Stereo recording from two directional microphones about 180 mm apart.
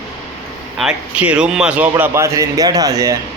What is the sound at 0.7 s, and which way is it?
A man's voice, 5° right (ahead or behind).